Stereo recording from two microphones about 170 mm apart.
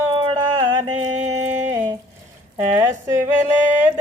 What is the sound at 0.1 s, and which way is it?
Music, 30° right (ahead or behind).